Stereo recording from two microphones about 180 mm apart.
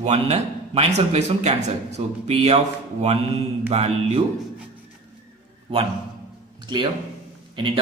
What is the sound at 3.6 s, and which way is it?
Speech, 35° right (ahead or behind).